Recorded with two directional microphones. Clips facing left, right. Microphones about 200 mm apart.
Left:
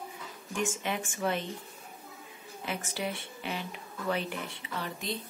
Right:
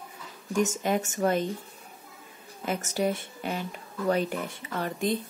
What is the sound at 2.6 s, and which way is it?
A woman's voice, 45° right (ahead or behind).